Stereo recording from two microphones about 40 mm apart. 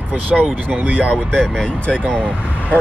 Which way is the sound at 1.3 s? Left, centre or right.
Centre.